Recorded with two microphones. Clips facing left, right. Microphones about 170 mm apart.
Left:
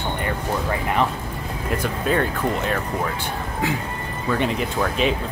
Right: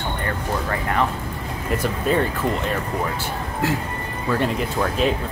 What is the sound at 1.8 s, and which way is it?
Speech, centre (ahead or behind).